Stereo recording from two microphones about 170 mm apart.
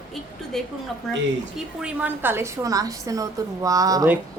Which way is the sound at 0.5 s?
Centre (ahead or behind).